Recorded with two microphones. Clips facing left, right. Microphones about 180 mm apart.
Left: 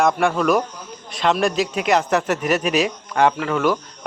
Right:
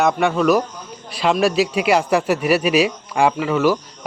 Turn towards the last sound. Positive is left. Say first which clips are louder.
# right 2 dB
turn(degrees=-5)  # may be behind; listen again after turning